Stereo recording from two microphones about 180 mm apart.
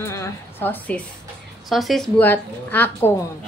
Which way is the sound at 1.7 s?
Centre (ahead or behind).